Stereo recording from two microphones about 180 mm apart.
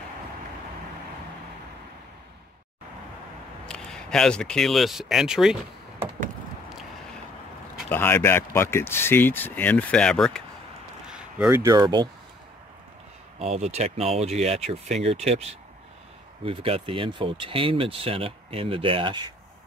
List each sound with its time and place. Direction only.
3.6 s speech: 5° left (ahead or behind)
7.9 s speech: 10° left (ahead or behind)
11.4 s speech: 15° right (ahead or behind)
13.4 s speech: 35° right (ahead or behind)